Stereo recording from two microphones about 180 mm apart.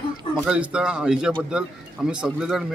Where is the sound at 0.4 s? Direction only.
5° right (ahead or behind).